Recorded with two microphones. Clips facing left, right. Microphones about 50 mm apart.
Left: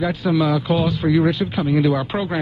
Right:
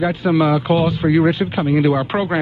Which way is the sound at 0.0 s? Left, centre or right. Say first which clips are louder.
Right 3 dB; right.